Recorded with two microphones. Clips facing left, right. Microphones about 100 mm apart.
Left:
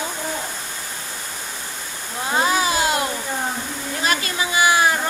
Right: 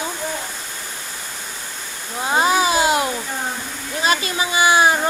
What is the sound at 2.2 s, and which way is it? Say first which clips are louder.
Speech: right 3 dB; 20° right (ahead or behind).